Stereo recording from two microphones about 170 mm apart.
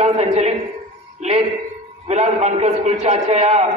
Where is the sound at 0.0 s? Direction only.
40° right (ahead or behind).